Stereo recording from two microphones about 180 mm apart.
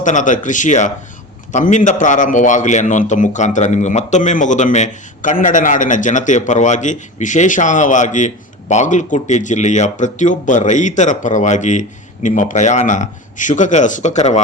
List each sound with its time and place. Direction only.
0.0 s a man's voice: 45° left (ahead or behind)